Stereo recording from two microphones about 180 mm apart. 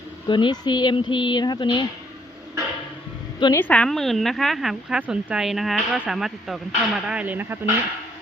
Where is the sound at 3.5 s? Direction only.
10° left (ahead or behind); by 7.6 s 10° right (ahead or behind).